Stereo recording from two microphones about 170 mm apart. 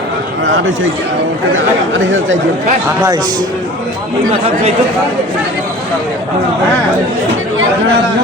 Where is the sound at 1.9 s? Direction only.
90° right.